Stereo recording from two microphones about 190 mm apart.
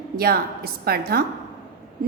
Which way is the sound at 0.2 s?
55° right (ahead or behind).